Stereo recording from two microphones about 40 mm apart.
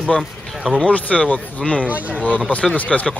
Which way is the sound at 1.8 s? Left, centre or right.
Right.